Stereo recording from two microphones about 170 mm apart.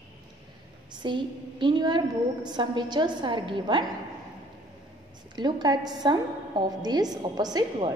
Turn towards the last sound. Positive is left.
turn(degrees=-25)  # may be behind; listen again after turning